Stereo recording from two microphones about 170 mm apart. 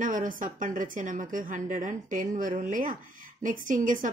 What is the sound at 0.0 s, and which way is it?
Speech, 50° right (ahead or behind).